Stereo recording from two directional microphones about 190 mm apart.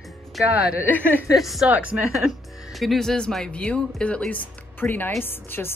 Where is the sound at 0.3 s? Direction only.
5° right (ahead or behind).